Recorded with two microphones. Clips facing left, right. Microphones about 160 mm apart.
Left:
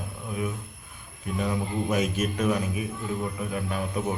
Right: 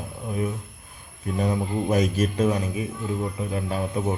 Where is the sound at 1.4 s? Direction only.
35° right (ahead or behind).